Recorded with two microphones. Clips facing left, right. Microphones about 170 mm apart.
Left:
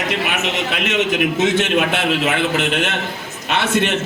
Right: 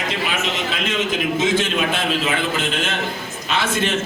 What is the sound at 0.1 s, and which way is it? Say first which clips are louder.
A man's voice: left 2 dB; 65° left (ahead or behind).